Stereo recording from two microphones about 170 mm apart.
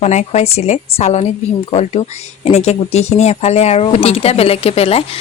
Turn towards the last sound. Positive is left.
turn(degrees=35)  # may be behind; listen again after turning